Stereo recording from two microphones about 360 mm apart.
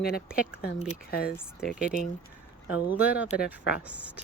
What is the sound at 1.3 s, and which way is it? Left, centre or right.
Speech, centre.